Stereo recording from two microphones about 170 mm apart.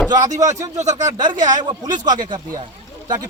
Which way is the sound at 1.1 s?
25° right (ahead or behind).